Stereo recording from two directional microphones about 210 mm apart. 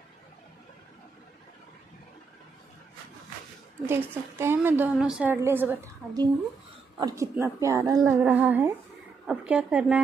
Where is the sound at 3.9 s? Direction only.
10° right (ahead or behind).